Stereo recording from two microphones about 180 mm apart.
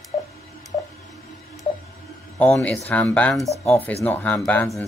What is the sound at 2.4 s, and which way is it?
Speech, 5° left (ahead or behind).